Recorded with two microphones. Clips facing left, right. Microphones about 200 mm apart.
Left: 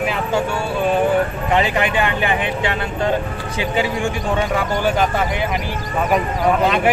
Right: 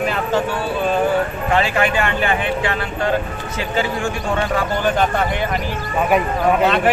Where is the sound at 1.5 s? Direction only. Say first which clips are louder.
Right 1 dB; 20° left (ahead or behind).